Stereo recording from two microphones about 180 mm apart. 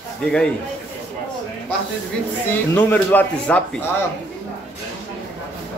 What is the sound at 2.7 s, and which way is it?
Speech, 10° left (ahead or behind).